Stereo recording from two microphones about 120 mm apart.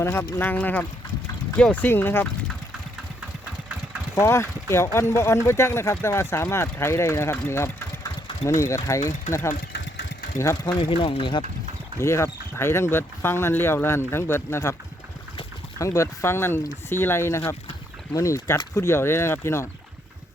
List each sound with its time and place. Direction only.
0.0 s speech: 20° left (ahead or behind)
4.1 s speech: 25° left (ahead or behind)
10.3 s speech: 25° left (ahead or behind)
10.8 s speech: 45° left (ahead or behind)
11.9 s speech: 25° left (ahead or behind)
15.8 s speech: 25° left (ahead or behind)